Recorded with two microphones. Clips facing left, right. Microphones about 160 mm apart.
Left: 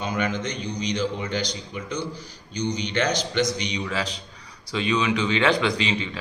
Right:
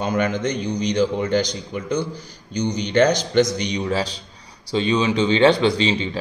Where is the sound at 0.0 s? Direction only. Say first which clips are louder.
Right 5 dB; 45° right (ahead or behind).